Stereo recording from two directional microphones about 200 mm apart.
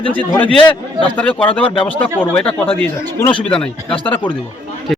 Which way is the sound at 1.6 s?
25° left (ahead or behind).